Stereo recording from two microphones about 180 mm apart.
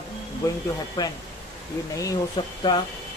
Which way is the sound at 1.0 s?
20° left (ahead or behind).